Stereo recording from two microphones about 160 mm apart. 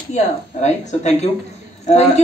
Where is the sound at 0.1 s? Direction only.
45° left (ahead or behind).